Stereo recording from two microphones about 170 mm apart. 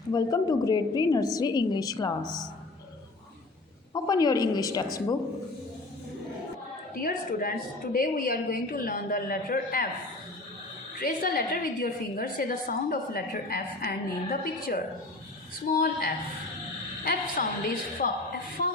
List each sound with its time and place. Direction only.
0.1 s a woman's voice: 20° left (ahead or behind)
3.9 s a woman's voice: 20° left (ahead or behind)
6.9 s a woman's voice: 55° left (ahead or behind)
11.0 s a woman's voice: 60° left (ahead or behind)